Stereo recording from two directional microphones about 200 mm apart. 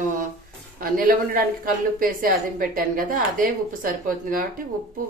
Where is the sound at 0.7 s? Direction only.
45° right (ahead or behind).